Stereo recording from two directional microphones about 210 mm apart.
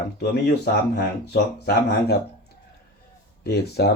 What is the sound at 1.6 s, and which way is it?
Speech, 50° left (ahead or behind).